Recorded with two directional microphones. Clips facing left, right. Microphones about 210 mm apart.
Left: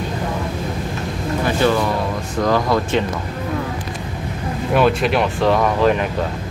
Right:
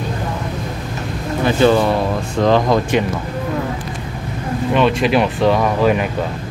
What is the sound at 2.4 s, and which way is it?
Speech, 25° right (ahead or behind).